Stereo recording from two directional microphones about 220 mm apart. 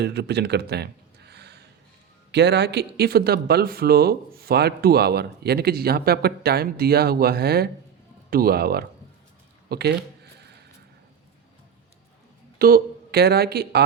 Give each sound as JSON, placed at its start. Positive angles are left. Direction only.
{"t": 0.0, "sound": "speech", "side_deg": -50}
{"t": 12.5, "sound": "speech", "side_deg": -40}